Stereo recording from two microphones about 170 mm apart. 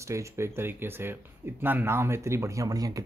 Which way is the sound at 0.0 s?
15° right (ahead or behind).